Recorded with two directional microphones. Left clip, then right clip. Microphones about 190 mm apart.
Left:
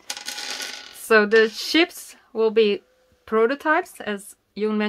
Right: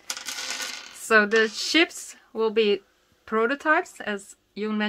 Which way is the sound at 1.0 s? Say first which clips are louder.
Left 3 dB; 25° left (ahead or behind).